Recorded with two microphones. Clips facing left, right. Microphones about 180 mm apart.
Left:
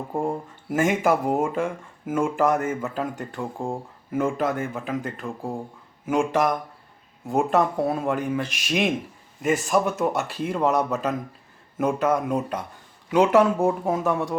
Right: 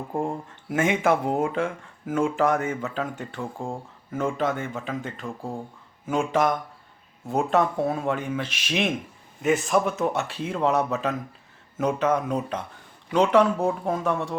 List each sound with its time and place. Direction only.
0.7 s speech: centre (ahead or behind)